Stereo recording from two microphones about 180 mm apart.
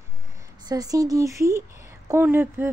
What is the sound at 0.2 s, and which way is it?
Speech, 20° right (ahead or behind).